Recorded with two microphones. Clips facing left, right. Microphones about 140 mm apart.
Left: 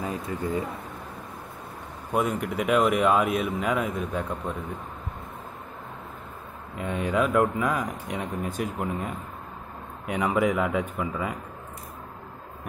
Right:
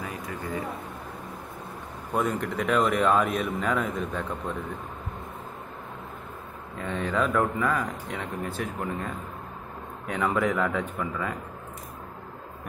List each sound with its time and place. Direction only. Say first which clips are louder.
0.0 s speech: left 5 dB; 20° left (ahead or behind)
2.1 s speech: left 1 dB; 10° left (ahead or behind)
6.8 s speech: left 2 dB; 10° left (ahead or behind)